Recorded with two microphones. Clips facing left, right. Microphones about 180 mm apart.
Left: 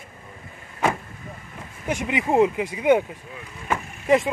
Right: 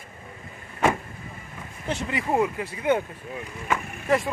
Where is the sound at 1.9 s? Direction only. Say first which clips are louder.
Left 3 dB; 15° left (ahead or behind).